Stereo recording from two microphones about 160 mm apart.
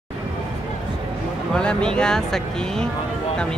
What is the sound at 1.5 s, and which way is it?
Speech, 5° left (ahead or behind).